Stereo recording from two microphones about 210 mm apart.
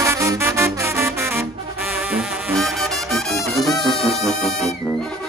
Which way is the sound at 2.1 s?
Centre (ahead or behind).